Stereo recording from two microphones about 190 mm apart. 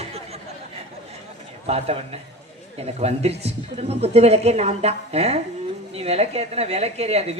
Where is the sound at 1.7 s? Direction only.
30° right (ahead or behind).